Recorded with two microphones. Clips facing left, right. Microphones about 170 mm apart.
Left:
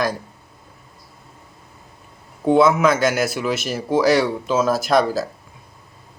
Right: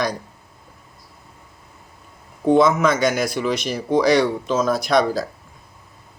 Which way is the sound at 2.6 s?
5° left (ahead or behind).